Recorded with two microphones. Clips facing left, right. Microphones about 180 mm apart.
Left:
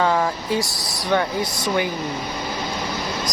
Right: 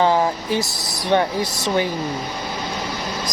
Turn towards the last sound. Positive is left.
turn(degrees=-25)  # may be behind; listen again after turning